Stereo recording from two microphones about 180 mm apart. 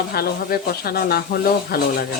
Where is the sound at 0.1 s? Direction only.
60° left (ahead or behind).